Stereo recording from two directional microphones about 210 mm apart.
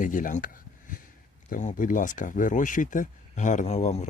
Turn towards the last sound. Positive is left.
turn(degrees=30)  # may be behind; listen again after turning